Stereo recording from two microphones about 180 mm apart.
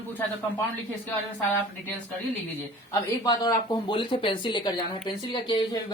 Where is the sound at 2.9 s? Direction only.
20° left (ahead or behind).